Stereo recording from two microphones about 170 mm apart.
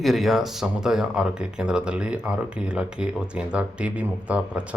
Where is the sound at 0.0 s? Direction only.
Centre (ahead or behind).